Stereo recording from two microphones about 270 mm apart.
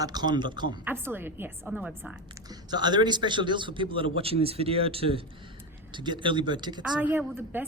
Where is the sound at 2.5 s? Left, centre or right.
Centre.